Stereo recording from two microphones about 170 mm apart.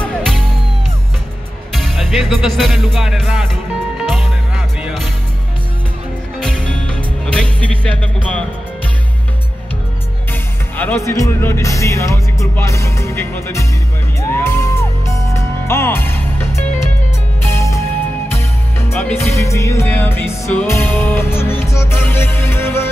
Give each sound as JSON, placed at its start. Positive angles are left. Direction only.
{"t": 0.0, "sound": "music", "side_deg": 5}
{"t": 1.7, "sound": "music", "side_deg": 0}
{"t": 6.4, "sound": "music", "side_deg": 5}
{"t": 10.8, "sound": "music", "side_deg": 15}